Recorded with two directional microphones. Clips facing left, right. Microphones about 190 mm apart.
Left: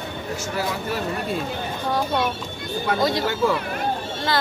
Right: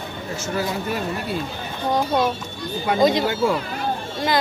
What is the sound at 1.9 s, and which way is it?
Speech, 20° right (ahead or behind).